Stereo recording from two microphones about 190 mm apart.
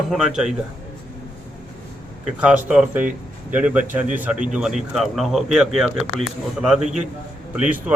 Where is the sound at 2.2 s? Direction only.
5° right (ahead or behind).